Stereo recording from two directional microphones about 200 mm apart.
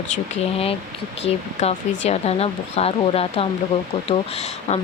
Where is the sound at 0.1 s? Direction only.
30° left (ahead or behind).